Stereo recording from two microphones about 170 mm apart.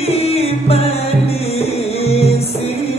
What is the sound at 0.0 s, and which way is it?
Music, 35° left (ahead or behind).